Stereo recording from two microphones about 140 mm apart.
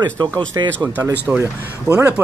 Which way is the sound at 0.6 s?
25° right (ahead or behind).